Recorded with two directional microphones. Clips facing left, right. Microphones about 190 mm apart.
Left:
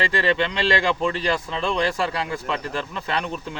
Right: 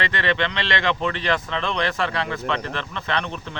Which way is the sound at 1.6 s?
10° left (ahead or behind).